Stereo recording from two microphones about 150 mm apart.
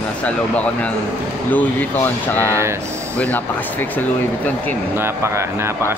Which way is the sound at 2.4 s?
15° right (ahead or behind).